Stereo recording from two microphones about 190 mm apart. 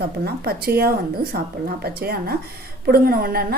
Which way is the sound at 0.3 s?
55° right (ahead or behind).